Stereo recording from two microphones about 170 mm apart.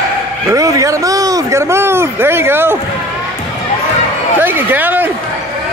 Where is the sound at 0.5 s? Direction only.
20° right (ahead or behind).